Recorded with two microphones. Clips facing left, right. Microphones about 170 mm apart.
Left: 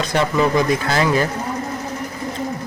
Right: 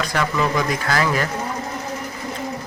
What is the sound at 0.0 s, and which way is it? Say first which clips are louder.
A man's voice: left 4 dB; 25° left (ahead or behind).